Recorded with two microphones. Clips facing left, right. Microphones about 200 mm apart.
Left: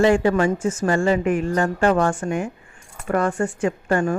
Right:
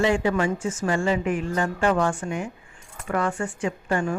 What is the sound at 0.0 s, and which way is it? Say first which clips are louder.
A woman's voice: left 5 dB; 45° left (ahead or behind).